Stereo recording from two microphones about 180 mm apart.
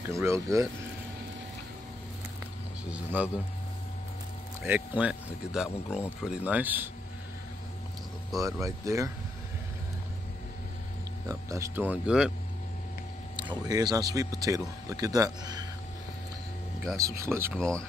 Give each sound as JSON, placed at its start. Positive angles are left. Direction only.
{"t": 0.0, "sound": "speech", "side_deg": -15}
{"t": 2.8, "sound": "speech", "side_deg": -10}
{"t": 4.6, "sound": "speech", "side_deg": -10}
{"t": 8.3, "sound": "speech", "side_deg": 0}
{"t": 8.5, "sound": "speech", "side_deg": -15}
{"t": 11.2, "sound": "speech", "side_deg": -15}
{"t": 13.4, "sound": "speech", "side_deg": -25}
{"t": 16.9, "sound": "speech", "side_deg": -15}
{"t": 17.6, "sound": "speech", "side_deg": 5}